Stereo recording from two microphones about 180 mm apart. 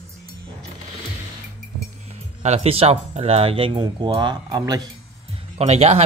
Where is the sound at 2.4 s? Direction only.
35° right (ahead or behind).